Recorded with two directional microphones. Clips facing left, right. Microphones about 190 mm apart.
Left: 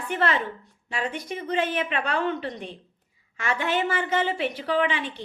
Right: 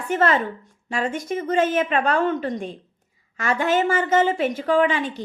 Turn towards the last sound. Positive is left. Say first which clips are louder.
# right 5 dB
turn(degrees=-40)  # may be behind; listen again after turning